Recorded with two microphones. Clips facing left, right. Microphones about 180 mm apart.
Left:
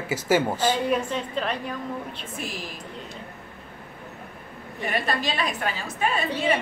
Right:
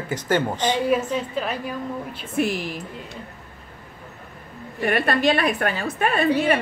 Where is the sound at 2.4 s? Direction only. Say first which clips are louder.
Right 14 dB; 65° right (ahead or behind).